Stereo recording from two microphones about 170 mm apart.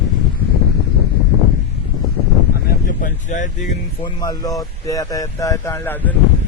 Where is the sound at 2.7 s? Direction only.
55° left (ahead or behind).